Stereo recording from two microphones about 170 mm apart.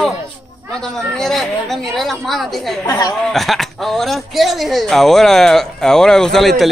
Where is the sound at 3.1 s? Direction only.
Centre (ahead or behind).